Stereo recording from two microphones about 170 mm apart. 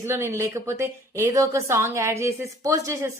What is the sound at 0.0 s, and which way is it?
A woman's voice, 15° right (ahead or behind).